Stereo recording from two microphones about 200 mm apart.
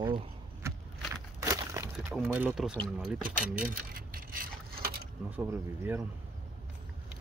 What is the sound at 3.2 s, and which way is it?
Speech, 45° right (ahead or behind).